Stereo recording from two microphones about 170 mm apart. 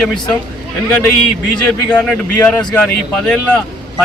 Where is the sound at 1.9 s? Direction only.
10° left (ahead or behind).